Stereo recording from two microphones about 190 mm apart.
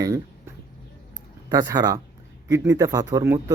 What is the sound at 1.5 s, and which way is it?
Speech, 20° right (ahead or behind).